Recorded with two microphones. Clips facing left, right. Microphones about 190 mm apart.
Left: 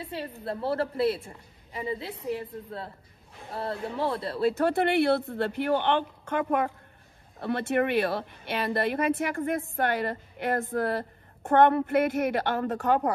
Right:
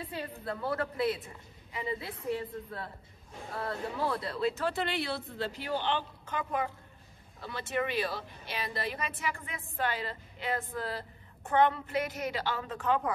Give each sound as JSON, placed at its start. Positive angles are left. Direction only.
{"t": 0.5, "sound": "a man's voice", "side_deg": 30}
{"t": 3.5, "sound": "speech", "side_deg": 30}
{"t": 4.5, "sound": "speech", "side_deg": 55}